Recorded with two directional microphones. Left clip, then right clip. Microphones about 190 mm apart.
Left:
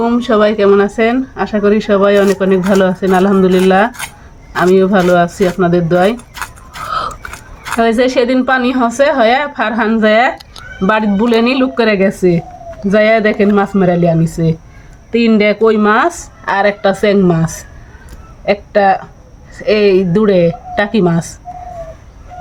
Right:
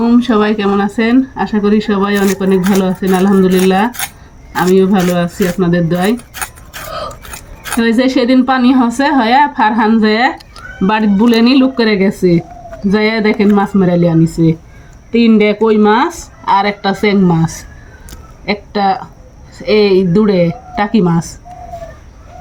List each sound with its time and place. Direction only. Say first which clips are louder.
0.0 s speech: left 1 dB; 35° left (ahead or behind)
6.3 s dog: even; centre (ahead or behind)
6.8 s a sound: left 5 dB; 20° left (ahead or behind)
7.8 s speech: left 2 dB; 35° left (ahead or behind)
15.1 s speech: even; 50° left (ahead or behind); by 17.4 s 35° left (ahead or behind)
18.4 s speech: left 4 dB; 35° left (ahead or behind)